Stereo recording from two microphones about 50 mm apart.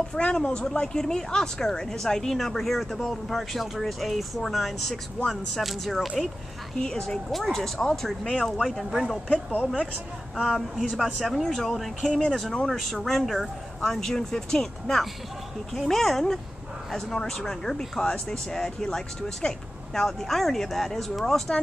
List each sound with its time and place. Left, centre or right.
0.1 s a woman's voice: centre
5.3 s speech: centre
6.8 s speech: centre
8.4 s speech: centre
10.4 s a woman's voice: centre